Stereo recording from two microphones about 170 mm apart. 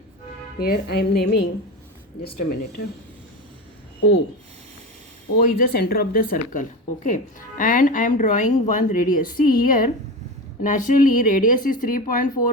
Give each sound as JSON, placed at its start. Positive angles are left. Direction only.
{"t": 0.6, "sound": "music", "side_deg": 65}
{"t": 2.2, "sound": "speech", "side_deg": 65}
{"t": 5.4, "sound": "a woman's voice", "side_deg": 65}